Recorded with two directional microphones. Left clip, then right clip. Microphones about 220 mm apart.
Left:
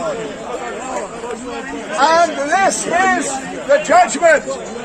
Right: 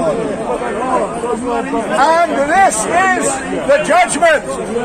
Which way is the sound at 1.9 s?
Centre (ahead or behind).